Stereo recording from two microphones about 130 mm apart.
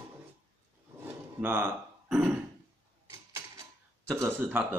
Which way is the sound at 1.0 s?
15° right (ahead or behind).